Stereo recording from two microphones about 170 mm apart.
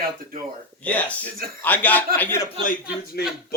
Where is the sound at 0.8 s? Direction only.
10° left (ahead or behind).